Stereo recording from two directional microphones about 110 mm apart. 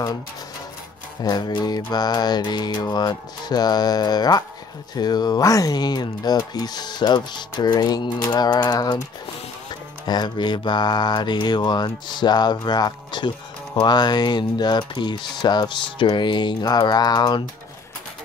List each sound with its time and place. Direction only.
1.2 s speech: 40° left (ahead or behind)